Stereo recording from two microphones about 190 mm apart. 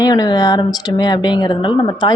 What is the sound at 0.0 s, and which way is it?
A woman's voice, 20° left (ahead or behind).